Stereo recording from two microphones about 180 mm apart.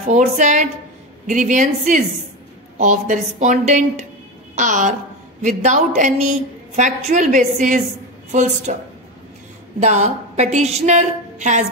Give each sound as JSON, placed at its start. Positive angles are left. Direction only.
{"t": 0.1, "sound": "a woman's voice", "side_deg": -40}
{"t": 9.8, "sound": "a woman's voice", "side_deg": -40}